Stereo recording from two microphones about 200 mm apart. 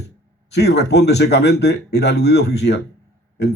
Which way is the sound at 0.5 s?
55° left (ahead or behind).